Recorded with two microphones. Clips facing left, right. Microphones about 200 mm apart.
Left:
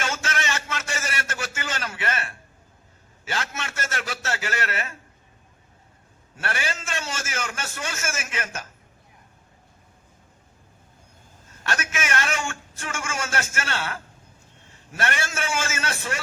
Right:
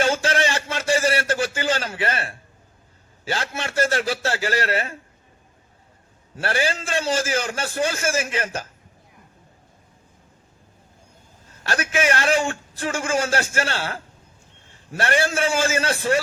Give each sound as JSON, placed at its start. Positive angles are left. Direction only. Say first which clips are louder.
{"t": 0.0, "sound": "a sound", "louder": "right 8 dB", "side_deg": -30}
{"t": 3.2, "sound": "a man's voice", "louder": "right 4 dB", "side_deg": -30}
{"t": 6.3, "sound": "a man's voice", "louder": "right 7 dB", "side_deg": -30}
{"t": 11.6, "sound": "a man's voice", "louder": "right 7 dB", "side_deg": -35}